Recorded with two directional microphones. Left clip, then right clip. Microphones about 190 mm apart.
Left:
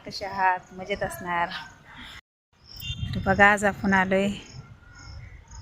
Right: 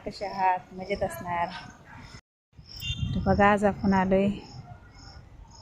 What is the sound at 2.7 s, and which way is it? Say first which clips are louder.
Speech: right 1 dB; centre (ahead or behind).